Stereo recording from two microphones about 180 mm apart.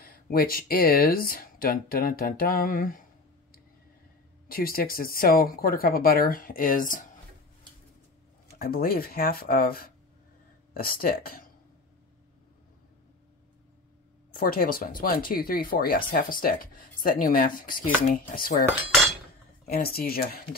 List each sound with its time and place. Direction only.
0.0 s speech: 55° left (ahead or behind)
4.5 s speech: 55° left (ahead or behind)
8.5 s speech: 55° left (ahead or behind)
14.3 s speech: 55° left (ahead or behind)